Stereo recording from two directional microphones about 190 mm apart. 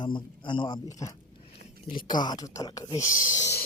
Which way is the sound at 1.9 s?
25° left (ahead or behind).